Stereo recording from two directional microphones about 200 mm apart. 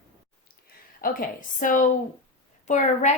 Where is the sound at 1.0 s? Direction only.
45° left (ahead or behind).